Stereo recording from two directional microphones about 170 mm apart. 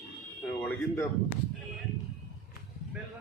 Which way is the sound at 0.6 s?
10° left (ahead or behind).